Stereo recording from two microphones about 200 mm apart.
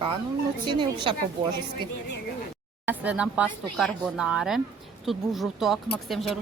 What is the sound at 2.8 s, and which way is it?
Speech, 10° right (ahead or behind).